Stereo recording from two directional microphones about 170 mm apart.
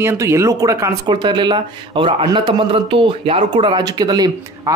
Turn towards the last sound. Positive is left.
turn(degrees=-25)  # may be behind; listen again after turning